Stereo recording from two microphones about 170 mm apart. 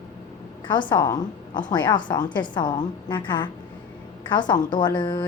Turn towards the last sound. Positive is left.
turn(degrees=25)  # may be behind; listen again after turning